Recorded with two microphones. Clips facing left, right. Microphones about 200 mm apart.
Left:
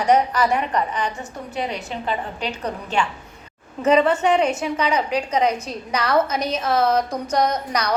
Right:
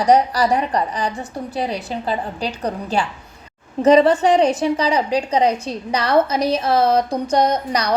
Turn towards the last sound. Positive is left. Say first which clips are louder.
# right 3 dB
turn(degrees=-30)  # may be behind; listen again after turning